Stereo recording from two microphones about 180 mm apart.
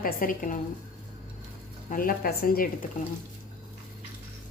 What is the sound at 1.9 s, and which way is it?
A woman's voice, 55° left (ahead or behind).